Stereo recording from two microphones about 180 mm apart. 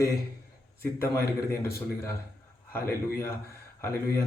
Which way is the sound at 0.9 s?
15° left (ahead or behind).